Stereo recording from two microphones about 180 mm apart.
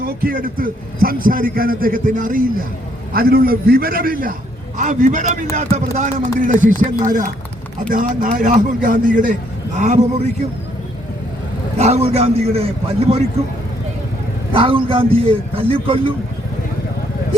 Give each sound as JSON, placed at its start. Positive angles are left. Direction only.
{"t": 0.0, "sound": "a man's voice", "side_deg": -55}
{"t": 11.8, "sound": "a man's voice", "side_deg": -35}
{"t": 14.5, "sound": "a man's voice", "side_deg": -30}